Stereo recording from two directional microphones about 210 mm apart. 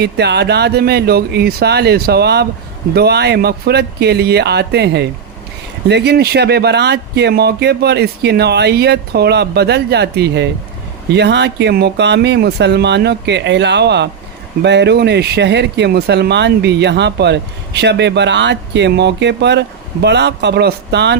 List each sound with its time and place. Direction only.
0.0 s speech: 50° right (ahead or behind)